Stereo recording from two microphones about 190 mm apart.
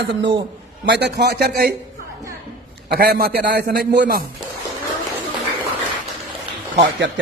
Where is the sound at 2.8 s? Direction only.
55° right (ahead or behind).